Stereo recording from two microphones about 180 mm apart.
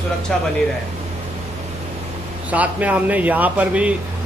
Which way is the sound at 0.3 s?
5° left (ahead or behind).